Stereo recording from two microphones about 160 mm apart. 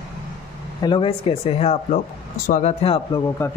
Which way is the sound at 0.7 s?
30° left (ahead or behind).